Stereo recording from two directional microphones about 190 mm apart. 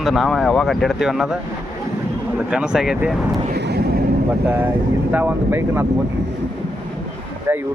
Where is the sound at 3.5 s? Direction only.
60° right (ahead or behind).